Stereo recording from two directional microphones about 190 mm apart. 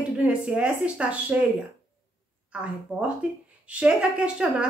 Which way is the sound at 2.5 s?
5° right (ahead or behind).